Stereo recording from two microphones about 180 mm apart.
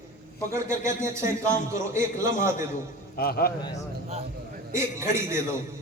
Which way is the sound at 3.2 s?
55° left (ahead or behind).